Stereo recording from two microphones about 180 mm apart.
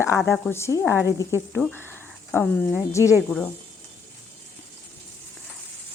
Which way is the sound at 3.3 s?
10° left (ahead or behind).